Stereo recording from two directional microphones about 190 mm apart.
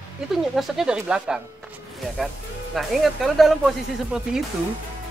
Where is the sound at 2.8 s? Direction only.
Centre (ahead or behind).